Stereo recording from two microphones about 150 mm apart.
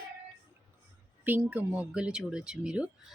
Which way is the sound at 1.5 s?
10° right (ahead or behind).